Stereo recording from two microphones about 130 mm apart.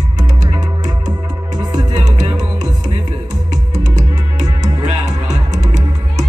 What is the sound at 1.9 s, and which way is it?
Music, 65° right (ahead or behind).